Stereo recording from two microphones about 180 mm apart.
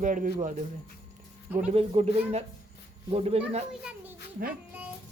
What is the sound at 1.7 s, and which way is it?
Speech, 40° right (ahead or behind).